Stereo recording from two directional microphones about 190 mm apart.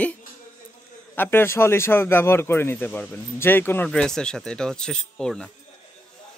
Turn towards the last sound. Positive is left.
turn(degrees=5)  # may be behind; listen again after turning